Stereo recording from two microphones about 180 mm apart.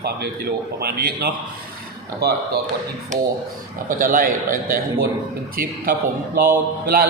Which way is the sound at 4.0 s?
50° right (ahead or behind).